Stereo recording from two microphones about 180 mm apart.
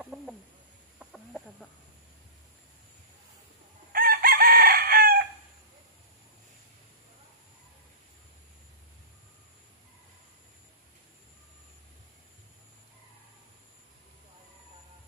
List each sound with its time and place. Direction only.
0.0 s bird: 5° right (ahead or behind)
0.9 s chicken: centre (ahead or behind)
3.9 s chicken: 55° right (ahead or behind)